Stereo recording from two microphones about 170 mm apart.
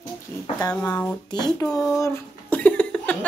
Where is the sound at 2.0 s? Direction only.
10° left (ahead or behind).